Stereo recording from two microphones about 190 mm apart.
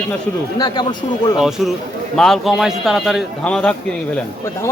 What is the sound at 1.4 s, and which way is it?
A man's voice, centre (ahead or behind).